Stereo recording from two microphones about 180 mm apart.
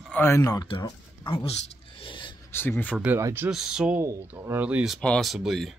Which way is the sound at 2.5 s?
10° left (ahead or behind).